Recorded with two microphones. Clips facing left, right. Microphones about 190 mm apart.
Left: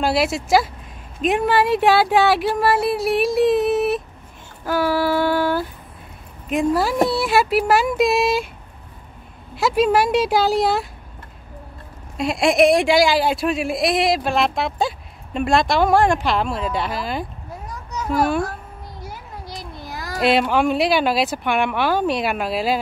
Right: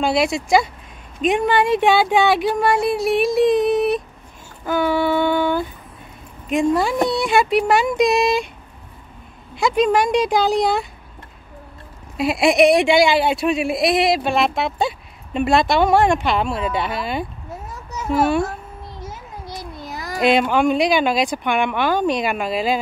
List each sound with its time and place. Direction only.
0.0 s speech: 5° left (ahead or behind)
4.6 s child singing: 5° left (ahead or behind)
6.5 s speech: 5° left (ahead or behind)
9.6 s speech: 5° left (ahead or behind)
12.2 s speech: 5° right (ahead or behind)
17.6 s a sound: 25° right (ahead or behind)
18.1 s speech: centre (ahead or behind)
18.9 s a sound: 20° right (ahead or behind)
20.2 s speech: 5° left (ahead or behind)